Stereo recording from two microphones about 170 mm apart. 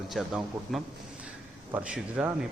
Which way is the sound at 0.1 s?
Centre (ahead or behind).